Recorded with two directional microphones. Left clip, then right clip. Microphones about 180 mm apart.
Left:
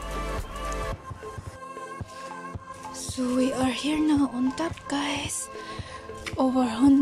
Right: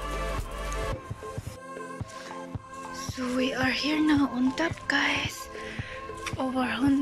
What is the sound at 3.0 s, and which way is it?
A woman's voice, 20° left (ahead or behind).